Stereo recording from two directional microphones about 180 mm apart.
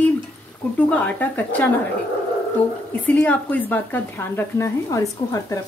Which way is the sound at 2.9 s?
10° left (ahead or behind).